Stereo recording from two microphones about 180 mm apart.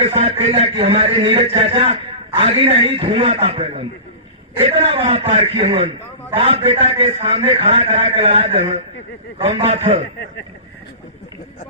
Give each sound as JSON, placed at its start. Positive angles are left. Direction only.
{"t": 0.0, "sound": "a man's voice", "side_deg": -35}